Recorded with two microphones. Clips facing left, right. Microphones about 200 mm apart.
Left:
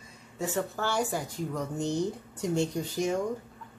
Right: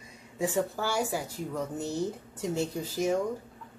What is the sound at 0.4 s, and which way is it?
Speech, 10° right (ahead or behind).